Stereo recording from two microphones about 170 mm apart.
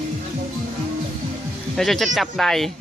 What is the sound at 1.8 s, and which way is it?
Speech, centre (ahead or behind).